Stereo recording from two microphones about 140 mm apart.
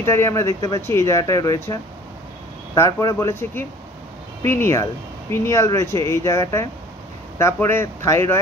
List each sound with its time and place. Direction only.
0.0 s speech: 20° left (ahead or behind)